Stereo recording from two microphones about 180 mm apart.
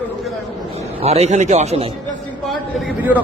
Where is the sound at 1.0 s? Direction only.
35° right (ahead or behind).